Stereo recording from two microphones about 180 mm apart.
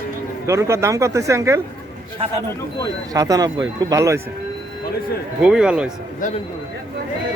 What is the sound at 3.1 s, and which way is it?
Speech, 20° right (ahead or behind).